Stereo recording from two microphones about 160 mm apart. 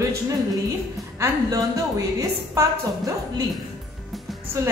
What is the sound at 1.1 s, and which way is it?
A woman's voice, 20° right (ahead or behind).